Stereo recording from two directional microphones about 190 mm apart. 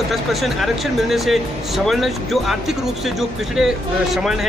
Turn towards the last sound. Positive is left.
turn(degrees=0)  # may be behind; listen again after turning